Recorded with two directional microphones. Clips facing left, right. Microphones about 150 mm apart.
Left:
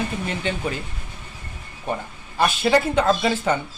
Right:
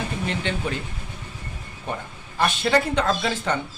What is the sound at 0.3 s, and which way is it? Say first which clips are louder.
Speech: left 1 dB; 5° left (ahead or behind).